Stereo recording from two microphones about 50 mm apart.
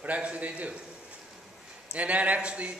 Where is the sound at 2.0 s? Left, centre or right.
Right.